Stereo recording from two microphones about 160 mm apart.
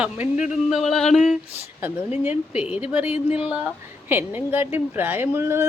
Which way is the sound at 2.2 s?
10° right (ahead or behind).